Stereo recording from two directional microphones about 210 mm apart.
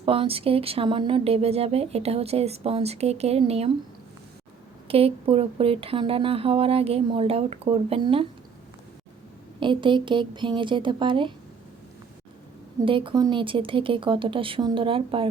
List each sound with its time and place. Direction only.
0.0 s a woman's voice: 25° right (ahead or behind)
4.9 s a woman's voice: 25° right (ahead or behind)
9.6 s a woman's voice: 25° right (ahead or behind)
12.8 s a woman's voice: 25° right (ahead or behind)